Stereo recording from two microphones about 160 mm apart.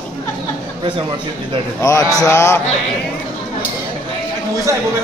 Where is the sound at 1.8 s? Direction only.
20° left (ahead or behind).